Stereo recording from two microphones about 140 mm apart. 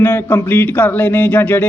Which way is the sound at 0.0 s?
10° left (ahead or behind).